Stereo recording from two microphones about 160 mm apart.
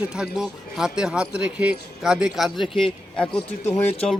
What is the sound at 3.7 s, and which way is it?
Speech, 40° left (ahead or behind).